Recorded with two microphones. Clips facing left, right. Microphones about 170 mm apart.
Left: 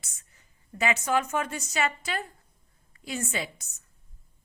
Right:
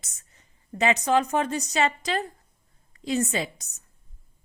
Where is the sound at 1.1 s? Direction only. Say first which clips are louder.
Right 4 dB; 35° right (ahead or behind).